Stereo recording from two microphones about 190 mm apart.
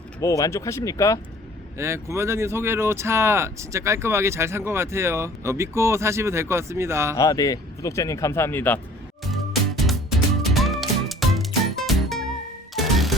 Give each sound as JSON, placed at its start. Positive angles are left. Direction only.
{"t": 0.2, "sound": "speech", "side_deg": 15}
{"t": 1.8, "sound": "speech", "side_deg": -15}
{"t": 7.2, "sound": "speech", "side_deg": 20}
{"t": 9.2, "sound": "music", "side_deg": 0}